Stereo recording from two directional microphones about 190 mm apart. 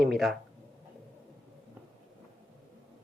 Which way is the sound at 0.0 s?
Centre (ahead or behind).